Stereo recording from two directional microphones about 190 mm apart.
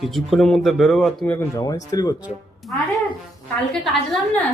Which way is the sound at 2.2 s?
Centre (ahead or behind).